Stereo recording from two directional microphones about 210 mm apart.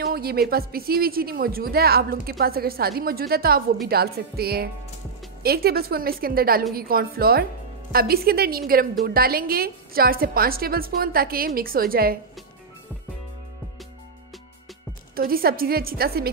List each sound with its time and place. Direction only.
0.0 s a woman's voice: 45° right (ahead or behind)
15.1 s a woman's voice: 45° right (ahead or behind)